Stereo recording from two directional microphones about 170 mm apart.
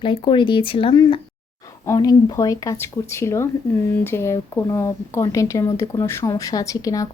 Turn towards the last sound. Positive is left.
turn(degrees=20)  # may be behind; listen again after turning